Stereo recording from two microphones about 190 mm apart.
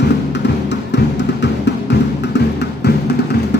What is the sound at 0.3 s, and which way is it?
Music, 65° left (ahead or behind).